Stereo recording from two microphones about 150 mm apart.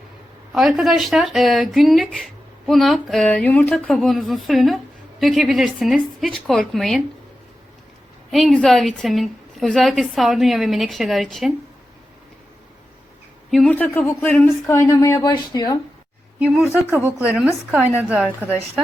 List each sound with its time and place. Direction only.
0.5 s a woman's voice: centre (ahead or behind)
8.3 s a woman's voice: centre (ahead or behind)
13.5 s speech: 5° left (ahead or behind); by 15.8 s 25° left (ahead or behind)
16.4 s a woman's voice: centre (ahead or behind)
16.8 s a woman's voice: 10° right (ahead or behind)